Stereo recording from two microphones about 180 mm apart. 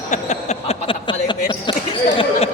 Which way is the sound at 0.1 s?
40° left (ahead or behind).